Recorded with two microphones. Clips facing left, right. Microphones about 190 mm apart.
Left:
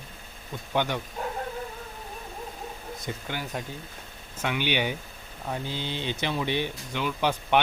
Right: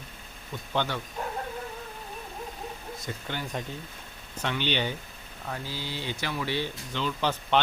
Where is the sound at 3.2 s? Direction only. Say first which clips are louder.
Right 1 dB; 10° left (ahead or behind).